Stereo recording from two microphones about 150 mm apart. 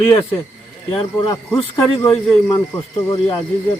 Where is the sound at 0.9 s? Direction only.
30° left (ahead or behind).